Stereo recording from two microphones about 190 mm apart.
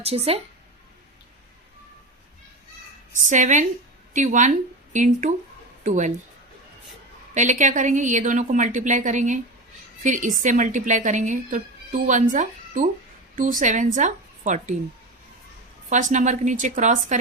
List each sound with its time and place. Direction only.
0.0 s a woman's voice: 30° right (ahead or behind)
3.2 s a woman's voice: 40° right (ahead or behind)
7.3 s a woman's voice: 40° right (ahead or behind)
15.9 s a woman's voice: 40° right (ahead or behind)